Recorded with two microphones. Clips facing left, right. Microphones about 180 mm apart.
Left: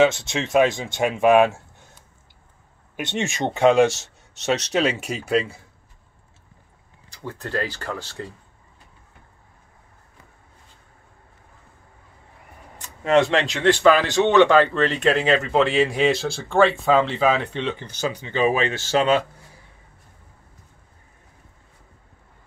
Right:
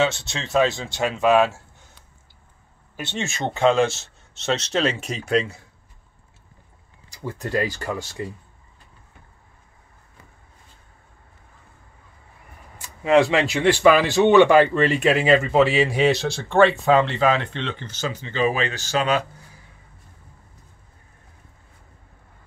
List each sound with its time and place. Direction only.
0.3 s speech: 15° left (ahead or behind)
3.0 s speech: 15° left (ahead or behind)
7.1 s speech: 10° right (ahead or behind)
13.0 s speech: 5° right (ahead or behind); by 19.2 s 25° left (ahead or behind)